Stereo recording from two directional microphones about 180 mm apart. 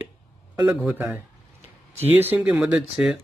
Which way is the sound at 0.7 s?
5° right (ahead or behind).